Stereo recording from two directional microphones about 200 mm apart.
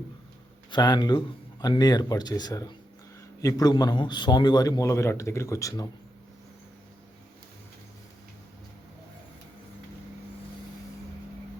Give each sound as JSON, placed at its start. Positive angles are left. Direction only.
{"t": 0.7, "sound": "a man's voice", "side_deg": 20}